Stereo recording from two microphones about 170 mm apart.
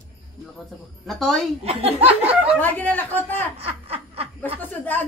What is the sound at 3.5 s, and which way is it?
Laughter, 35° right (ahead or behind).